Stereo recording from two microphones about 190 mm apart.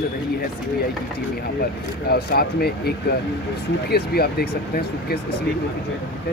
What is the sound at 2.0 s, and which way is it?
Speech, 55° left (ahead or behind).